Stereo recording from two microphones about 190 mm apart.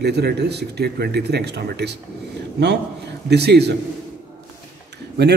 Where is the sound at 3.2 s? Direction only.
60° right (ahead or behind).